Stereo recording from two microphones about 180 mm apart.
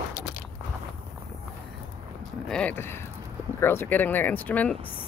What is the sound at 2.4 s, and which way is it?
Speech, 5° left (ahead or behind).